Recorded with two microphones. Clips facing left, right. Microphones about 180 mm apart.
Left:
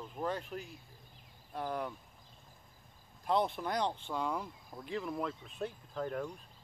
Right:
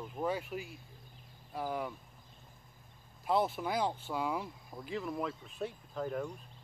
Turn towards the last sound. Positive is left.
turn(degrees=-5)  # may be behind; listen again after turning